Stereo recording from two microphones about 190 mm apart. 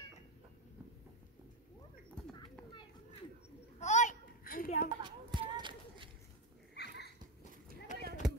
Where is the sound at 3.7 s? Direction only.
40° left (ahead or behind).